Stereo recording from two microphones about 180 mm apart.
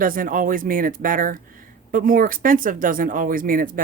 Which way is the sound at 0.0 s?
50° right (ahead or behind).